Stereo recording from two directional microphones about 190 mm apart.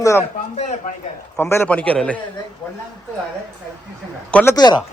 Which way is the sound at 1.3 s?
10° left (ahead or behind).